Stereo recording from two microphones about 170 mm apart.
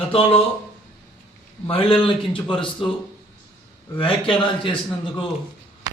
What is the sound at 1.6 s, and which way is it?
A man's voice, 30° left (ahead or behind).